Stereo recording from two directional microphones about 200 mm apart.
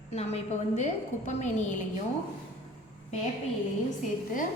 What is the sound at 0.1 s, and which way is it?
A woman's voice, 35° left (ahead or behind).